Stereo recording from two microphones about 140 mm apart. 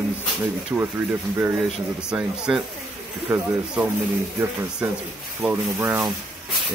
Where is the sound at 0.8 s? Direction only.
15° right (ahead or behind).